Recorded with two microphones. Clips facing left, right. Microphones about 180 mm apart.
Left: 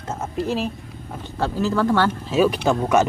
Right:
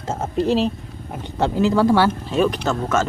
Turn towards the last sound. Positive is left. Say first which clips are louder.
# left 3 dB
turn(degrees=15)  # may be behind; listen again after turning